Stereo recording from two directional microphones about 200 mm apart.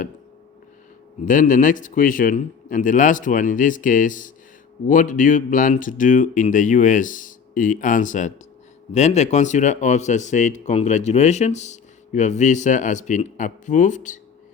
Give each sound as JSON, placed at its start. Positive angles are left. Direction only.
{"t": 1.2, "sound": "speech", "side_deg": 40}